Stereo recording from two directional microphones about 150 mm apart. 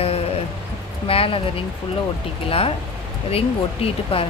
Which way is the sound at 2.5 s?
40° left (ahead or behind).